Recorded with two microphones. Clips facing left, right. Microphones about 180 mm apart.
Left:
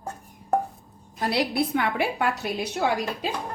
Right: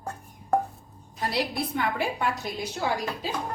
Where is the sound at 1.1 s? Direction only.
70° left (ahead or behind).